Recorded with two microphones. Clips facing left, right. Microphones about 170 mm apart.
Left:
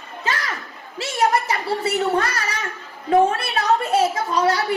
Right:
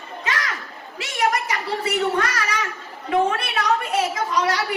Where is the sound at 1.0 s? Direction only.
30° left (ahead or behind).